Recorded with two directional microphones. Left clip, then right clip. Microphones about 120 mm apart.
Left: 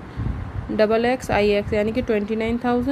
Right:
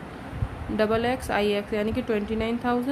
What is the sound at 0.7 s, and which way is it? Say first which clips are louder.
A woman's voice: left 5 dB; 30° left (ahead or behind).